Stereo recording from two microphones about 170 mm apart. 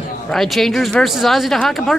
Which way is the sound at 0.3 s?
Centre (ahead or behind).